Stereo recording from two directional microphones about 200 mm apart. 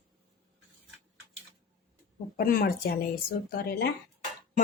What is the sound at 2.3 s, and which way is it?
A woman's voice, 50° left (ahead or behind).